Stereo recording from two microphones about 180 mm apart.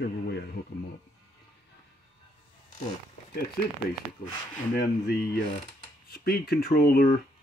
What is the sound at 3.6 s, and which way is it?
Speech, 55° left (ahead or behind).